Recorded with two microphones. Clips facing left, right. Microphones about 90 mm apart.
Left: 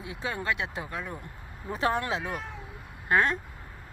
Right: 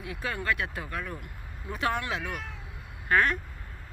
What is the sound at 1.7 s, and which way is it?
Speech, 35° left (ahead or behind).